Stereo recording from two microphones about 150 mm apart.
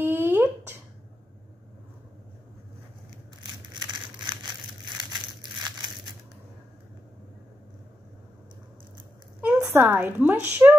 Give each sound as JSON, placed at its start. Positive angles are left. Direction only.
{"t": 0.0, "sound": "a sound", "side_deg": -15}
{"t": 3.8, "sound": "crumpling", "side_deg": -30}
{"t": 9.4, "sound": "a woman's voice", "side_deg": -10}